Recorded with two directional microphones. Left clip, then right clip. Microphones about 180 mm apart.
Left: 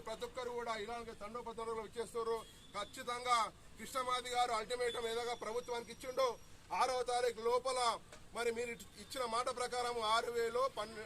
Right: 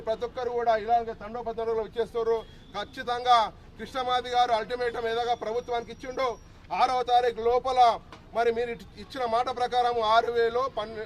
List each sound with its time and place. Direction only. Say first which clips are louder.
0.0 s a man's voice: right 14 dB; 15° right (ahead or behind)